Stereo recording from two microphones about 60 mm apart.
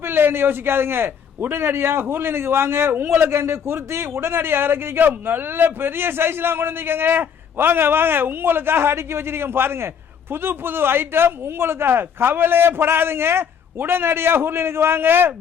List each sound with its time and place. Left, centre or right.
0.0 s a man's voice: right